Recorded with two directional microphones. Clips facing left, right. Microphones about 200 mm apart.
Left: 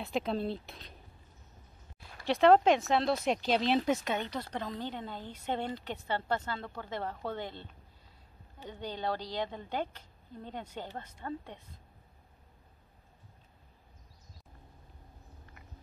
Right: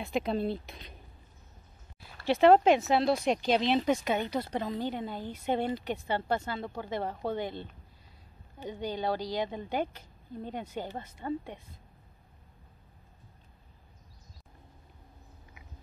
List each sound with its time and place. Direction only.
0.0 s speech: centre (ahead or behind)
2.2 s speech: 5° right (ahead or behind)
4.5 s a woman's voice: 20° right (ahead or behind)
8.6 s a woman's voice: 10° right (ahead or behind)